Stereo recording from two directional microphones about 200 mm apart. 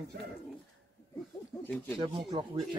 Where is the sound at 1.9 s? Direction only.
20° right (ahead or behind).